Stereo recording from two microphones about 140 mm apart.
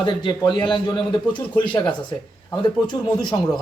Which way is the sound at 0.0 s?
30° left (ahead or behind).